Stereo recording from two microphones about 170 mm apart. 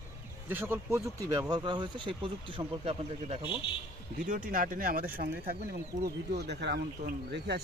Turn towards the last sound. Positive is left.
turn(degrees=-75)  # may be behind; listen again after turning